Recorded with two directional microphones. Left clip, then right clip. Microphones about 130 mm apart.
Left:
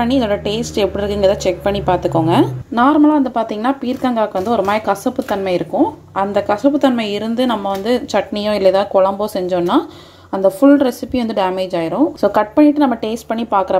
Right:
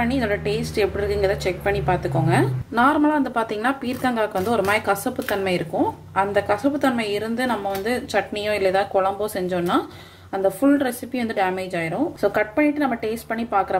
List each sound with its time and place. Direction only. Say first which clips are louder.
0.0 s speech: left 6 dB; 45° left (ahead or behind)